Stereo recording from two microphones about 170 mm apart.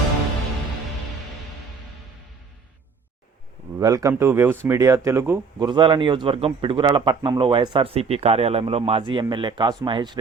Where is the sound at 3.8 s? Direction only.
20° right (ahead or behind).